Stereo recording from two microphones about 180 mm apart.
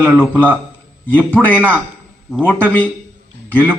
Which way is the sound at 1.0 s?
10° left (ahead or behind).